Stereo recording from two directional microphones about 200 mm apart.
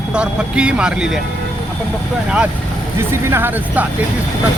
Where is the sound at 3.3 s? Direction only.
10° right (ahead or behind).